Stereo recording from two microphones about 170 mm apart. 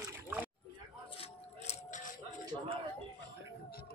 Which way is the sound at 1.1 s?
35° left (ahead or behind).